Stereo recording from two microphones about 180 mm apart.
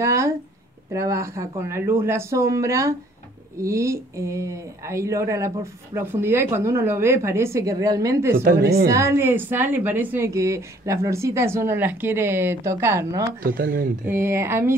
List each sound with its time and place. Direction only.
0.0 s speech: 15° right (ahead or behind)
8.4 s a woman's voice: 55° right (ahead or behind)
8.8 s speech: 15° right (ahead or behind)
13.4 s speech: 55° right (ahead or behind)
14.0 s speech: 15° right (ahead or behind)